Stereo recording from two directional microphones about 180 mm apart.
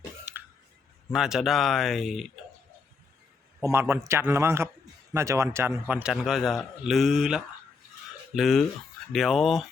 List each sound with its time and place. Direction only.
1.1 s a man's voice: centre (ahead or behind)
3.6 s a man's voice: 15° right (ahead or behind)